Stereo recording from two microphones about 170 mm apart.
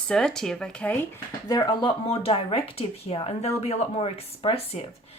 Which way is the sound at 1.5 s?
25° left (ahead or behind).